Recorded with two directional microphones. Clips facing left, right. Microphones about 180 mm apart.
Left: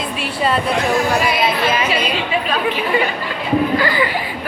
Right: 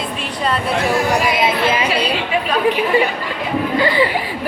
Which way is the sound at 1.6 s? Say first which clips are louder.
Right 1 dB; 30° right (ahead or behind).